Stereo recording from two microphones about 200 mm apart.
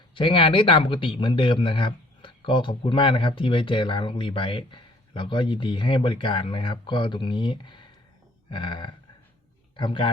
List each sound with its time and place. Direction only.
0.1 s a man's voice: 25° left (ahead or behind)